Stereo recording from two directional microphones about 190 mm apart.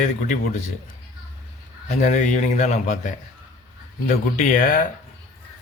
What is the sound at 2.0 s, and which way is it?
A man's voice, 40° left (ahead or behind).